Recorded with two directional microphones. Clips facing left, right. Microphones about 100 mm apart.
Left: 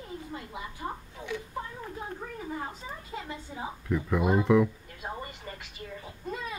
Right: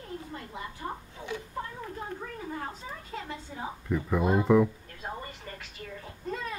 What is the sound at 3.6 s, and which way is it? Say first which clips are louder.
Speech: even; 5° right (ahead or behind).